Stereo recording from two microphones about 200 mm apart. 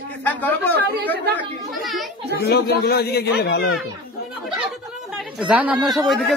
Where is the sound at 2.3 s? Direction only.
55° left (ahead or behind).